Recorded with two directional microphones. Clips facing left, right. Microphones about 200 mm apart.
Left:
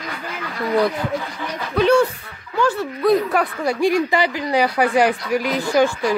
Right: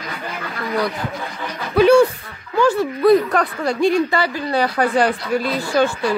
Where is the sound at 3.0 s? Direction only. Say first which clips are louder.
Right 2 dB; centre (ahead or behind).